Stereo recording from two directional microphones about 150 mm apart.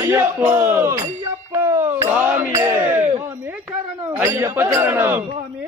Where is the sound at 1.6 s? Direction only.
15° right (ahead or behind).